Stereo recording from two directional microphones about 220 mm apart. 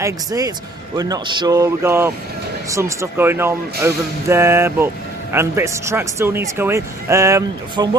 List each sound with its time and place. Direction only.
0.0 s speech: 15° right (ahead or behind)